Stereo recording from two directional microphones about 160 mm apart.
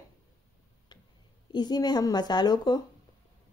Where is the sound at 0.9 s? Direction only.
30° left (ahead or behind).